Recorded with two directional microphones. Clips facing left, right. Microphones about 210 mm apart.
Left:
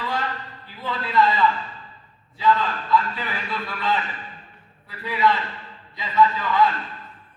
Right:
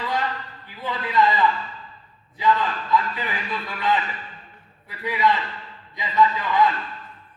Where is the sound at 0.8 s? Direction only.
15° right (ahead or behind).